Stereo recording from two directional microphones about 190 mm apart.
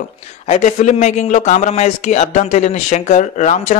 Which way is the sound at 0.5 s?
35° left (ahead or behind).